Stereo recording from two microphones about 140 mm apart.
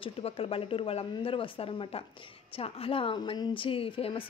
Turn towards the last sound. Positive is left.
turn(degrees=40)  # may be behind; listen again after turning